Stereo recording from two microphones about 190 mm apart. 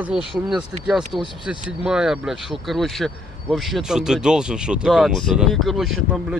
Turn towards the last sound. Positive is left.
turn(degrees=0)  # may be behind; listen again after turning